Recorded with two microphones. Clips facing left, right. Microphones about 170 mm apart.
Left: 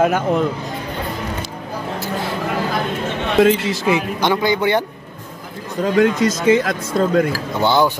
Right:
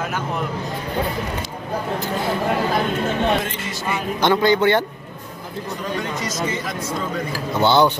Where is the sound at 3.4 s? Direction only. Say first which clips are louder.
Left 13 dB; 90° left.